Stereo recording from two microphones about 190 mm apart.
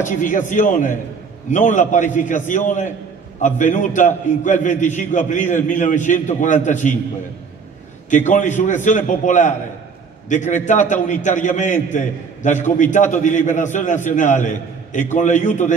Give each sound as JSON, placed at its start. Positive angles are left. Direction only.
{"t": 0.2, "sound": "a man's voice", "side_deg": 40}
{"t": 8.1, "sound": "a man's voice", "side_deg": 40}